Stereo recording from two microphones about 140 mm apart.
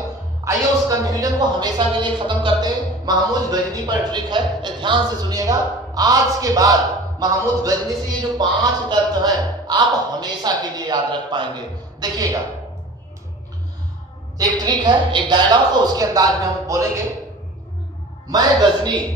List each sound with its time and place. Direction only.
0.5 s speech: 25° right (ahead or behind)
14.4 s speech: 30° right (ahead or behind)
18.3 s speech: 30° right (ahead or behind)